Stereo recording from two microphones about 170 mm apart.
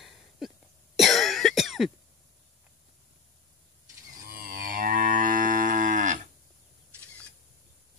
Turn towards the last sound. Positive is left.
turn(degrees=-50)  # may be behind; listen again after turning